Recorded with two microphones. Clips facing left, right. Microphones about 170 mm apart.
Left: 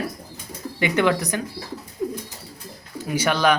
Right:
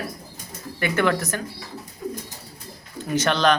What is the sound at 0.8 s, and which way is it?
Speech, 20° left (ahead or behind).